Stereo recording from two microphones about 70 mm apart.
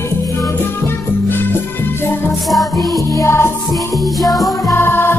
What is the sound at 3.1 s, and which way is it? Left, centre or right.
Music, left.